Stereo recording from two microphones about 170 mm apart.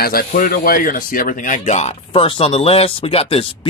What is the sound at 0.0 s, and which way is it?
Speech, 60° left (ahead or behind).